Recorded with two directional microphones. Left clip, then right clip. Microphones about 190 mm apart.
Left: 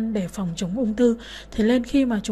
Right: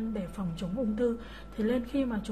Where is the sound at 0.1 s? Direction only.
35° left (ahead or behind).